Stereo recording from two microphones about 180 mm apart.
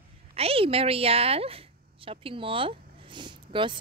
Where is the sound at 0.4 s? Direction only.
30° right (ahead or behind).